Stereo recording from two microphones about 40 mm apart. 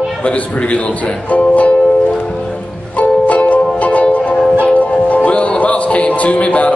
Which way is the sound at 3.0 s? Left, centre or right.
Left.